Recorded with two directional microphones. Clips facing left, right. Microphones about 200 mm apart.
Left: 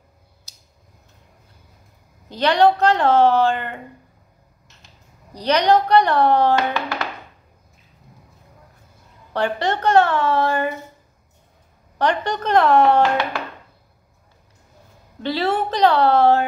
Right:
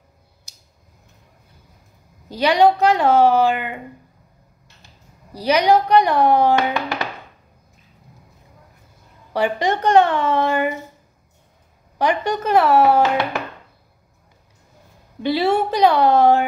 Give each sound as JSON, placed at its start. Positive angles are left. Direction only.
{"t": 2.2, "sound": "speech", "side_deg": -10}
{"t": 5.3, "sound": "speech", "side_deg": -10}
{"t": 9.3, "sound": "speech", "side_deg": -10}
{"t": 12.0, "sound": "speech", "side_deg": -10}
{"t": 15.2, "sound": "speech", "side_deg": -10}